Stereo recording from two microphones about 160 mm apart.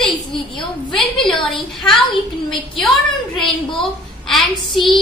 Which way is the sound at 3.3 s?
Centre (ahead or behind).